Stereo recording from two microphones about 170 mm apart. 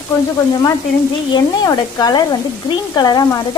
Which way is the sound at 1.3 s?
25° left (ahead or behind).